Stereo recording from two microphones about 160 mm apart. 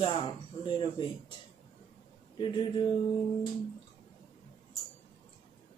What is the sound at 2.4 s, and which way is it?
Mantra, 30° left (ahead or behind).